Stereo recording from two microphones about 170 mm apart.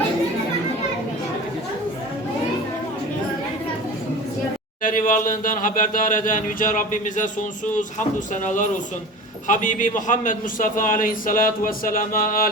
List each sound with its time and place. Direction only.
4.8 s speech: 55° left (ahead or behind)